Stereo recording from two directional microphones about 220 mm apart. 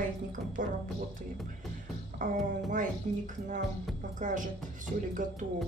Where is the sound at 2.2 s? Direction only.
35° right (ahead or behind).